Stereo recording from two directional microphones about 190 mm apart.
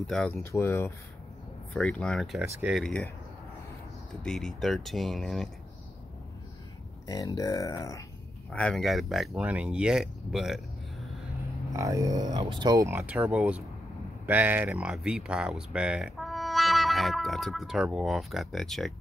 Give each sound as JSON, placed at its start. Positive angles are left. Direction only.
{"t": 0.0, "sound": "speech", "side_deg": 5}
{"t": 2.8, "sound": "speech", "side_deg": 5}
{"t": 4.2, "sound": "speech", "side_deg": 0}
{"t": 7.1, "sound": "speech", "side_deg": 20}
{"t": 8.5, "sound": "speech", "side_deg": 5}
{"t": 11.7, "sound": "speech", "side_deg": -15}